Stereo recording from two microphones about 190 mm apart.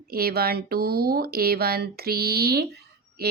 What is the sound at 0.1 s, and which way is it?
Speech, 55° right (ahead or behind).